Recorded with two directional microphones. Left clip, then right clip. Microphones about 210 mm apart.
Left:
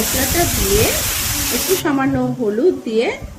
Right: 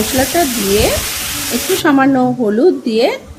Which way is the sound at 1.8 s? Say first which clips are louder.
Right 7 dB; 40° right (ahead or behind).